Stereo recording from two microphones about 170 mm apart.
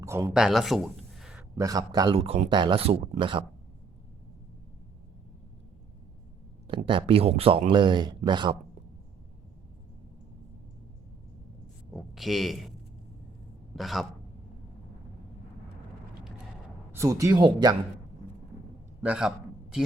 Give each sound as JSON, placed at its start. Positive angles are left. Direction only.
{"t": 0.0, "sound": "speech", "side_deg": -15}
{"t": 0.3, "sound": "speech", "side_deg": 0}
{"t": 1.4, "sound": "speech", "side_deg": -20}
{"t": 6.7, "sound": "speech", "side_deg": -30}
{"t": 11.9, "sound": "speech", "side_deg": 0}
{"t": 13.7, "sound": "speech", "side_deg": 0}
{"t": 16.9, "sound": "speech", "side_deg": -15}
{"t": 19.0, "sound": "speech", "side_deg": -5}